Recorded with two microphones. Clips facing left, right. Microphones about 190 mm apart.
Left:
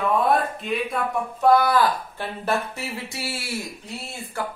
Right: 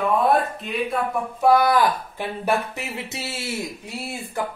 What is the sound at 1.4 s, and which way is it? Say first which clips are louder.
Speech: right 1 dB; 15° right (ahead or behind).